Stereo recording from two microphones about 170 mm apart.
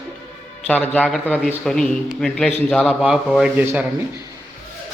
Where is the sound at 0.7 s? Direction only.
5° left (ahead or behind); by 3.8 s 10° right (ahead or behind).